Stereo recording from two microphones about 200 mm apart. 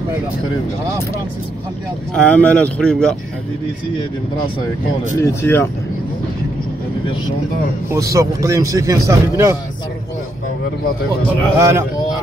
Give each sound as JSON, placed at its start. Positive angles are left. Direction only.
{"t": 2.1, "sound": "speech", "side_deg": 5}
{"t": 5.2, "sound": "speech", "side_deg": 10}
{"t": 7.9, "sound": "a man's voice", "side_deg": -15}
{"t": 11.5, "sound": "a man's voice", "side_deg": -15}